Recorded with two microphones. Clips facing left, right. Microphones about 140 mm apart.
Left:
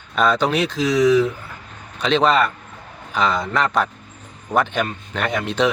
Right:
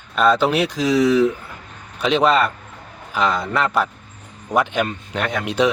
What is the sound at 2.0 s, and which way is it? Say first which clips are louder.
Speech: even; 5° right (ahead or behind).